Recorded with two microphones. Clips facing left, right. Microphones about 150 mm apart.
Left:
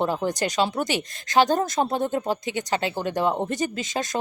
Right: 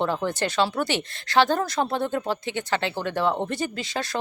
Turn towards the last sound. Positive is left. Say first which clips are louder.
# left 2 dB
turn(degrees=20)  # may be behind; listen again after turning